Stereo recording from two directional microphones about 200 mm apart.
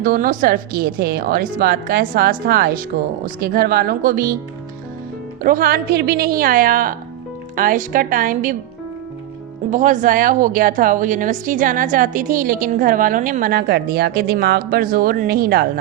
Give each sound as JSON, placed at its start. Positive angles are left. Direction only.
{"t": 0.0, "sound": "a woman's voice", "side_deg": -45}
{"t": 5.4, "sound": "a woman's voice", "side_deg": -45}
{"t": 9.7, "sound": "a woman's voice", "side_deg": -40}